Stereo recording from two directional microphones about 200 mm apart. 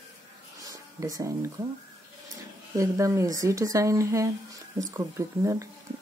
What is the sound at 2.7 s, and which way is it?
Speech, 15° right (ahead or behind).